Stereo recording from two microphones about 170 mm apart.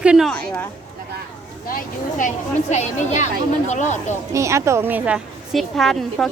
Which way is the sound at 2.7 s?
40° left (ahead or behind).